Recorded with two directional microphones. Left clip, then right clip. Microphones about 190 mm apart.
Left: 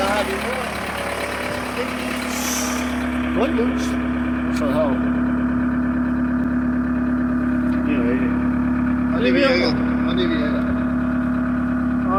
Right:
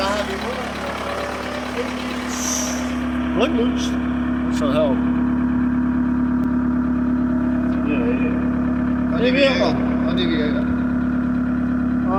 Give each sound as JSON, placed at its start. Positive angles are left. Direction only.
{"t": 9.2, "sound": "vehicle", "side_deg": -50}